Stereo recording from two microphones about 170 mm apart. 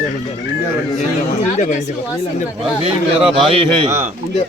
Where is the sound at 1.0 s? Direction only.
40° left (ahead or behind).